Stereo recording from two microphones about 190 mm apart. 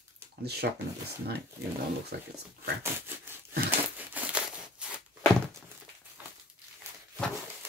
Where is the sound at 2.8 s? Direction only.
10° right (ahead or behind).